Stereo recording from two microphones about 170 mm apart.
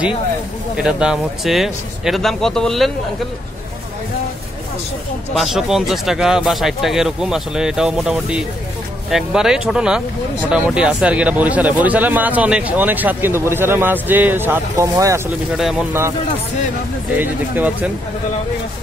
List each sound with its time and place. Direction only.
0.7 s speech: 5° right (ahead or behind)
5.3 s speech: centre (ahead or behind); by 15.2 s 15° right (ahead or behind)
17.2 s speech: 10° right (ahead or behind)